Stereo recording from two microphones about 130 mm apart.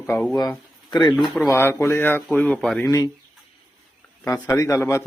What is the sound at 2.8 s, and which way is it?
Speech, 25° left (ahead or behind).